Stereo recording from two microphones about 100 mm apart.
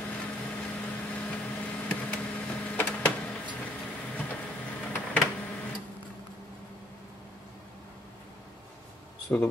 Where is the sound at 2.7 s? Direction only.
15° left (ahead or behind).